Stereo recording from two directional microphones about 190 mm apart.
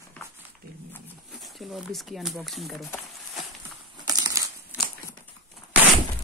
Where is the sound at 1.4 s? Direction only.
Centre (ahead or behind).